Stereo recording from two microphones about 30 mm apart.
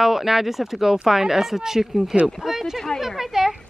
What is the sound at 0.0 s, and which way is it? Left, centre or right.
Speech, centre.